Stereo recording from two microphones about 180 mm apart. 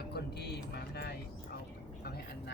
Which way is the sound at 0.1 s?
65° left (ahead or behind).